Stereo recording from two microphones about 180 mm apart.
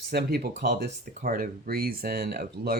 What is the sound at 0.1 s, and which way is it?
Speech, 65° right (ahead or behind).